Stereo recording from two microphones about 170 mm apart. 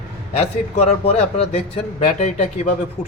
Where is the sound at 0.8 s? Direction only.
35° left (ahead or behind).